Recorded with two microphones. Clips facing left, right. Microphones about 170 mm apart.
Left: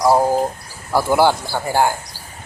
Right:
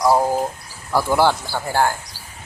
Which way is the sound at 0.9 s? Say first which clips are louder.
Left 2 dB; 5° left (ahead or behind).